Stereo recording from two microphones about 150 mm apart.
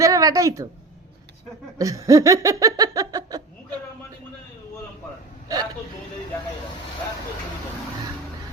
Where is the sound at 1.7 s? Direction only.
20° right (ahead or behind).